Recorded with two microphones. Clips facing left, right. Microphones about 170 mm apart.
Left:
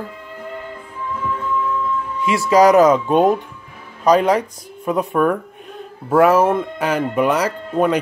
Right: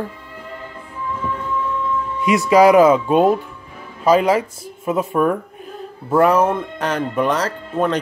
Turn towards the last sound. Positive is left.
turn(degrees=10)  # may be behind; listen again after turning